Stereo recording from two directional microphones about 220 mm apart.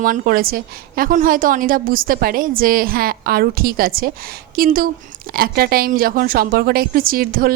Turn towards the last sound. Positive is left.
turn(degrees=-40)  # may be behind; listen again after turning